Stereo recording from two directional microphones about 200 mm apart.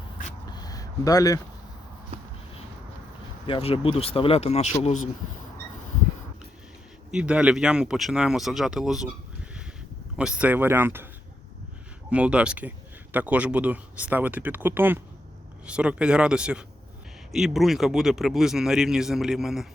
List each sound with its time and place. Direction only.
0.4 s a sound: 20° left (ahead or behind)
3.4 s speech: 25° left (ahead or behind)
7.1 s speech: 5° right (ahead or behind)
12.1 s speech: 5° right (ahead or behind)